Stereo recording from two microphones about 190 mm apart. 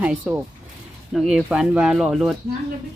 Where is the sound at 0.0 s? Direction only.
5° right (ahead or behind).